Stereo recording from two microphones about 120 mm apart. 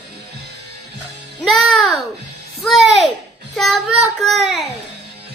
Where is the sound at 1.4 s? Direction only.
Centre (ahead or behind).